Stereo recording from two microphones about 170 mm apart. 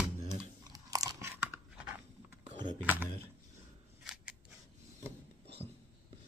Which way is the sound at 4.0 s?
5° right (ahead or behind).